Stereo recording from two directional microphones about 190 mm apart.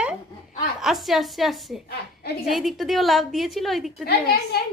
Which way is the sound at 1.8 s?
55° left (ahead or behind).